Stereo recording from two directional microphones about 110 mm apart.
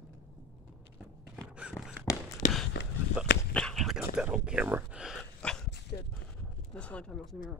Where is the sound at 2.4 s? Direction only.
90° left.